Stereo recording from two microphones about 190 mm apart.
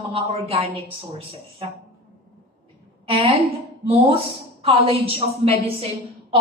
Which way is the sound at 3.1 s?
30° right (ahead or behind).